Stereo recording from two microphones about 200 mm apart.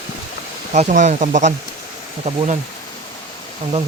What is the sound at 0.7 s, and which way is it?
Speech, 35° right (ahead or behind).